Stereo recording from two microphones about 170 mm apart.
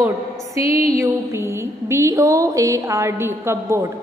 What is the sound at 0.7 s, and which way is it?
Music, 35° left (ahead or behind).